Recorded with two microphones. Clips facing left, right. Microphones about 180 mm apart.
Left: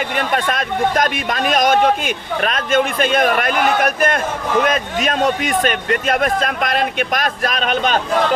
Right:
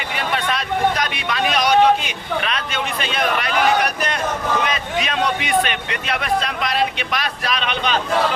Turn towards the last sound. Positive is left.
turn(degrees=45)  # may be behind; listen again after turning